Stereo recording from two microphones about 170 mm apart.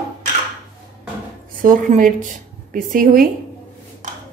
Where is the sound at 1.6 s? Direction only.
50° right (ahead or behind).